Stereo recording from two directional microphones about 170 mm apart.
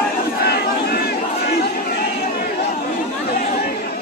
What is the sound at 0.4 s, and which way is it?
Crowd, 70° left (ahead or behind).